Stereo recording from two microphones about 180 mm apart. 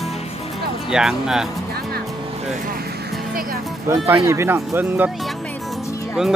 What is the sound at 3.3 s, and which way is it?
Speech, 55° right (ahead or behind).